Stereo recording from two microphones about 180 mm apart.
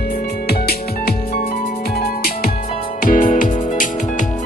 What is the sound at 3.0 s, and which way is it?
Music, 50° left (ahead or behind).